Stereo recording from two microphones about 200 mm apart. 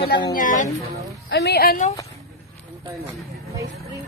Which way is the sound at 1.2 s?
55° left (ahead or behind).